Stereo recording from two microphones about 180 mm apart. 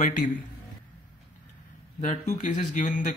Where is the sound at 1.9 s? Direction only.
40° left (ahead or behind).